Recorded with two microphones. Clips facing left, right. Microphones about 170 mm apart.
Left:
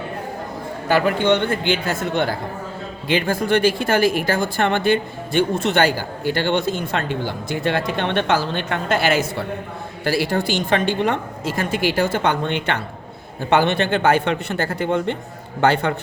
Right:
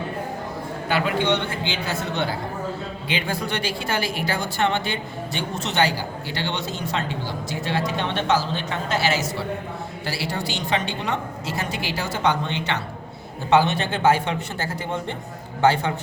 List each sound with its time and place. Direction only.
0.9 s a man's voice: 45° left (ahead or behind)